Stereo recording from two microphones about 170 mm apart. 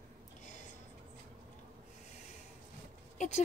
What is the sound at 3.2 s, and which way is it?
Speech, 45° left (ahead or behind).